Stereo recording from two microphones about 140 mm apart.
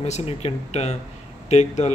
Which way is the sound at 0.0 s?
45° left (ahead or behind).